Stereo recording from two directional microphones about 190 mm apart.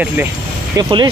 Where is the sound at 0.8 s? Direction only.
25° right (ahead or behind).